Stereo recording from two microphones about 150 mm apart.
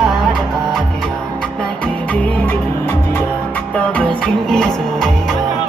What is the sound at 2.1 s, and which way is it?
Music, 10° left (ahead or behind).